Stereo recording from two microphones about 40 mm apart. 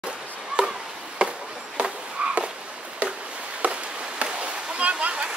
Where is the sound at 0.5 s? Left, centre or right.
Right.